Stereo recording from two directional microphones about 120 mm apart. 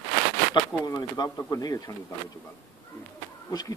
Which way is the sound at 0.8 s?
35° left (ahead or behind).